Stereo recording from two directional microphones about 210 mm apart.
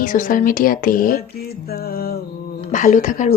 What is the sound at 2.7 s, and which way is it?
Speech, 40° left (ahead or behind).